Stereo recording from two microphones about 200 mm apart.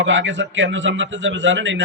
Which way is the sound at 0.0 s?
65° right (ahead or behind).